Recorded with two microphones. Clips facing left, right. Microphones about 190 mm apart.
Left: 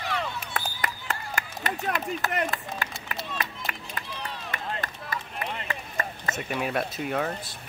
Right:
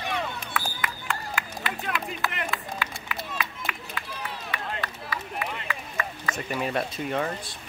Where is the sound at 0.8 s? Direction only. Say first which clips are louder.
Right 1 dB; 40° left (ahead or behind).